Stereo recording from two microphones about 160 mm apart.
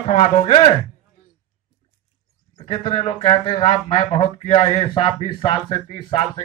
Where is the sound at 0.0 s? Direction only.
50° left (ahead or behind).